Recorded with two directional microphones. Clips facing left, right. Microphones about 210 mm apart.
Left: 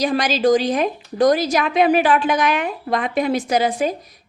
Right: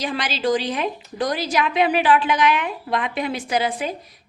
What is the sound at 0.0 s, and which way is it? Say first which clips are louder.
A woman's voice: left 6 dB; 40° left (ahead or behind).